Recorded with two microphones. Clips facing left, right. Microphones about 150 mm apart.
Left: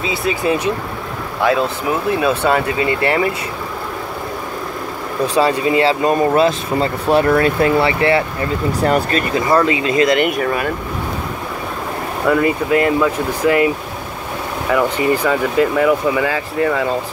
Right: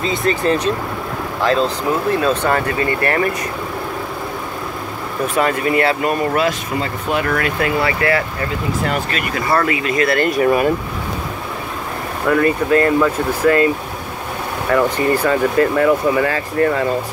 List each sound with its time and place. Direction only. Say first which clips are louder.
0.0 s speech: right 1 dB; 5° left (ahead or behind)
5.5 s speech: left 2 dB; 20° left (ahead or behind)
8.8 s speech: left 9 dB; 40° left (ahead or behind)
9.3 s speech: left 3 dB; 20° left (ahead or behind)
10.3 s speech: right 4 dB; 5° right (ahead or behind)
12.3 s speech: even; 10° left (ahead or behind)
14.7 s speech: even; 10° left (ahead or behind)